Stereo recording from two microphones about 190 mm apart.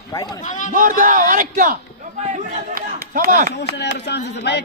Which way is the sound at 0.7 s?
45° right (ahead or behind).